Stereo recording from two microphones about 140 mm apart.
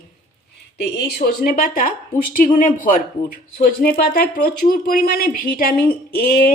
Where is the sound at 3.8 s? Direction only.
90° left.